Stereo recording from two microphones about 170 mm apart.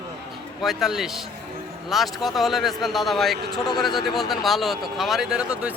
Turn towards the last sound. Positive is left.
turn(degrees=-5)  # may be behind; listen again after turning